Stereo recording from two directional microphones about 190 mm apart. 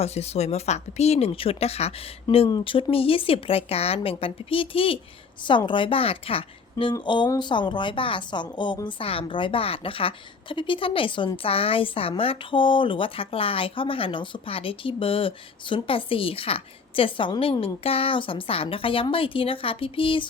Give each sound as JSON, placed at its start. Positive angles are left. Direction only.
{"t": 0.0, "sound": "a woman's voice", "side_deg": 35}